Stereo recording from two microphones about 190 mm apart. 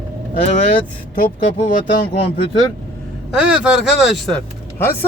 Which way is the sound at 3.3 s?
5° right (ahead or behind).